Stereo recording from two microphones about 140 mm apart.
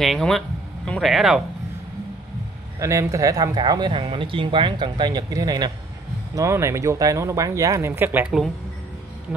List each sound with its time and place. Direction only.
0.0 s speech: centre (ahead or behind)
2.8 s speech: 20° right (ahead or behind)